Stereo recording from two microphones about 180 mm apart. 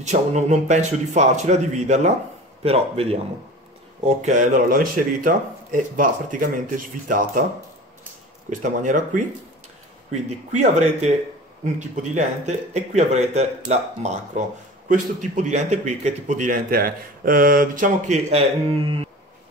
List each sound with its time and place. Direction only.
0.0 s a man's voice: 40° right (ahead or behind)
8.5 s a man's voice: 45° right (ahead or behind)
10.2 s a man's voice: 40° right (ahead or behind)